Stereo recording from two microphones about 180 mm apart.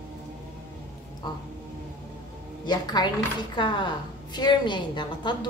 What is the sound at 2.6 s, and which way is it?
A woman's voice, 25° left (ahead or behind).